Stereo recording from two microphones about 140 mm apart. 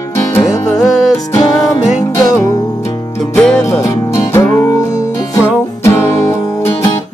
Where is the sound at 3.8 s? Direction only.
20° left (ahead or behind).